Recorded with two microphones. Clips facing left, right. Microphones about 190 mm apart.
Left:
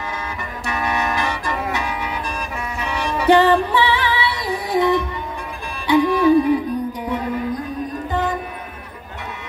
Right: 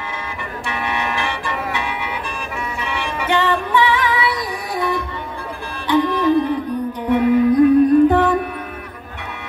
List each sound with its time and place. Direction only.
0.7 s music: 40° left (ahead or behind); by 5.0 s 20° left (ahead or behind)
5.9 s music: 10° left (ahead or behind)
7.2 s music: 65° right (ahead or behind)